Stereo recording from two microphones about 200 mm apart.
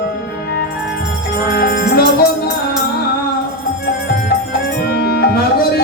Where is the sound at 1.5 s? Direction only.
50° left (ahead or behind).